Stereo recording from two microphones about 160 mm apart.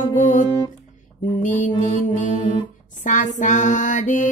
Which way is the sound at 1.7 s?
50° left (ahead or behind).